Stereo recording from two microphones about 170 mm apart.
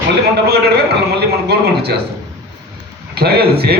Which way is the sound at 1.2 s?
70° right (ahead or behind).